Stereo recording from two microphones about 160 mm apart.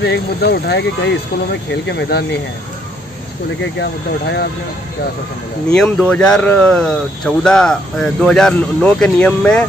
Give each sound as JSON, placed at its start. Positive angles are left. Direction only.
{"t": 0.0, "sound": "speech", "side_deg": 90}
{"t": 5.7, "sound": "speech", "side_deg": 5}